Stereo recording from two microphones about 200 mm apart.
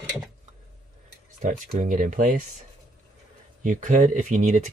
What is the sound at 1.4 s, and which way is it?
Speech, 40° right (ahead or behind).